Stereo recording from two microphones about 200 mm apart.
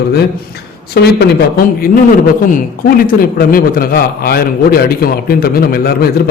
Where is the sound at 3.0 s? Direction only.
45° left (ahead or behind).